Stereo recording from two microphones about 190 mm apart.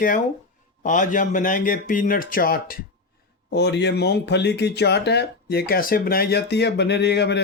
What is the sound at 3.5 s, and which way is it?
Speech, 65° left (ahead or behind).